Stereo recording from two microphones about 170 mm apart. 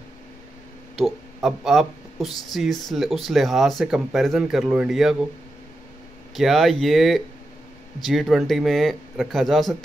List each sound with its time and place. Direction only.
0.9 s speech: centre (ahead or behind)
6.3 s speech: centre (ahead or behind)